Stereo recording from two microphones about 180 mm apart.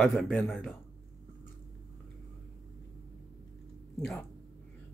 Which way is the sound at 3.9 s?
5° left (ahead or behind).